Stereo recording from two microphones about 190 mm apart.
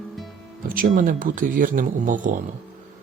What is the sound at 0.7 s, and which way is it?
Speech, 45° right (ahead or behind).